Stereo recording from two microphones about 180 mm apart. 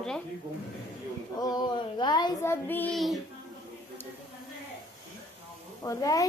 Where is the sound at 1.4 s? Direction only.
25° left (ahead or behind); by 3.2 s centre (ahead or behind).